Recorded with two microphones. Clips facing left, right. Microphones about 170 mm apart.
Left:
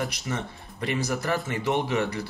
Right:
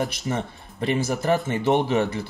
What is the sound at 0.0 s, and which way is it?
Speech, 30° right (ahead or behind).